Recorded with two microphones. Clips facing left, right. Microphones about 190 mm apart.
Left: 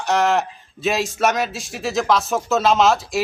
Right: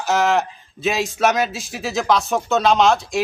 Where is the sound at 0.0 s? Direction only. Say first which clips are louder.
Even; centre (ahead or behind).